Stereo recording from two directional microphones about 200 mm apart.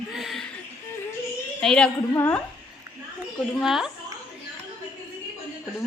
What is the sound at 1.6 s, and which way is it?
Speech, 5° left (ahead or behind).